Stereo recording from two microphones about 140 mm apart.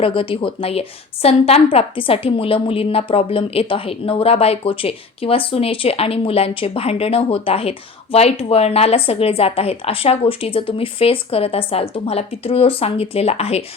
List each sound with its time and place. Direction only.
0.0 s a woman's voice: 40° left (ahead or behind)